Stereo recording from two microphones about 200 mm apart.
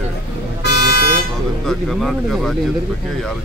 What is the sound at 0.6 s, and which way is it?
Vehicle, 50° left (ahead or behind).